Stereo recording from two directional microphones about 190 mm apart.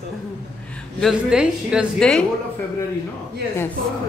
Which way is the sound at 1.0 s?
Centre (ahead or behind).